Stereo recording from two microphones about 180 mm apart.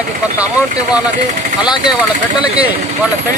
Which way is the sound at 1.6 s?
25° left (ahead or behind).